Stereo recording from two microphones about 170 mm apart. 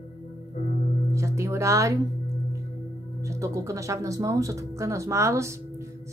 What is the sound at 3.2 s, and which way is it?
Speech, 20° right (ahead or behind).